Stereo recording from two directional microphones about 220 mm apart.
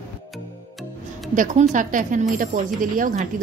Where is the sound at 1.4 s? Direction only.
35° right (ahead or behind).